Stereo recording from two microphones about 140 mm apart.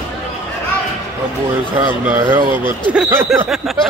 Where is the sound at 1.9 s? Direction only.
15° right (ahead or behind).